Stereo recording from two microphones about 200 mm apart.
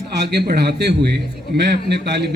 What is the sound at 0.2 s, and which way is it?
A man's voice, 55° right (ahead or behind).